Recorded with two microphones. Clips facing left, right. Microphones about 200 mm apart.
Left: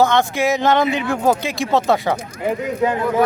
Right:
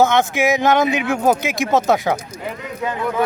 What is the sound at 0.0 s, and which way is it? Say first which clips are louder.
Speech: right 1 dB; 20° right (ahead or behind).